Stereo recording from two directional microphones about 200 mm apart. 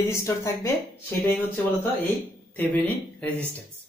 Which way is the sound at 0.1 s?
15° left (ahead or behind).